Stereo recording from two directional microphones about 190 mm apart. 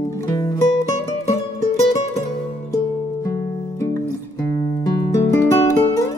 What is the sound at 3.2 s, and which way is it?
Music, 15° left (ahead or behind).